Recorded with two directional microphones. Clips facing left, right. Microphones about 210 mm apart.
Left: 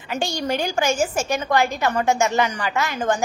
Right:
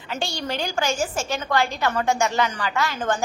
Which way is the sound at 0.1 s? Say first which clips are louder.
Left 4 dB; 15° left (ahead or behind).